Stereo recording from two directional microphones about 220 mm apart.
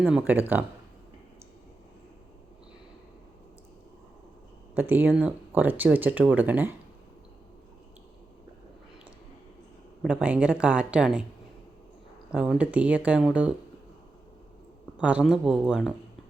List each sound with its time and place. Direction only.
0.0 s speech: 5° right (ahead or behind)
4.7 s speech: 10° right (ahead or behind)
10.0 s speech: 5° right (ahead or behind)
12.3 s speech: 5° right (ahead or behind)
14.9 s speech: 5° right (ahead or behind)